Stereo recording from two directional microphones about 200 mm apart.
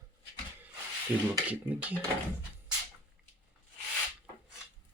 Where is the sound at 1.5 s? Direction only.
5° right (ahead or behind).